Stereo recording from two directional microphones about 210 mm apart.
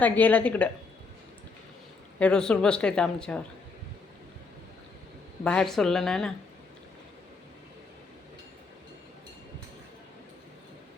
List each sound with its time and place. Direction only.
0.0 s a woman's voice: 5° left (ahead or behind)
2.1 s a woman's voice: 5° left (ahead or behind)
5.4 s a woman's voice: 5° left (ahead or behind)